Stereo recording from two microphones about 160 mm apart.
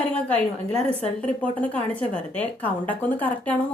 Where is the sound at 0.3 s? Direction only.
35° right (ahead or behind).